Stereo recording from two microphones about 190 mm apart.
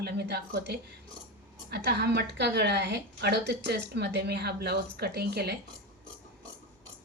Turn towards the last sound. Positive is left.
turn(degrees=-60)  # may be behind; listen again after turning